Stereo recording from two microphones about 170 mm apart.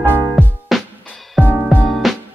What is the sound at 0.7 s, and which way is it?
Music, 5° left (ahead or behind).